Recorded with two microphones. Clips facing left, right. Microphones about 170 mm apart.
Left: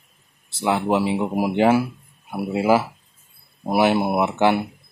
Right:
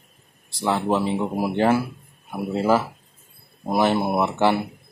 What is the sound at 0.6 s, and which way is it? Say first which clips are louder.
Speech: left 2 dB; 10° left (ahead or behind).